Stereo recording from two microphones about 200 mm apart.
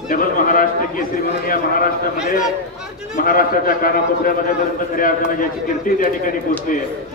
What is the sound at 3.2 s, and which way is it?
A man's voice, 45° left (ahead or behind).